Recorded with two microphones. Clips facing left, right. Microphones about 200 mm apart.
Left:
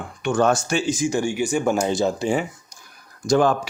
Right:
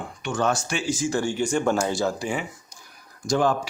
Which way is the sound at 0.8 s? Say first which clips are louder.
Even; 15° left (ahead or behind).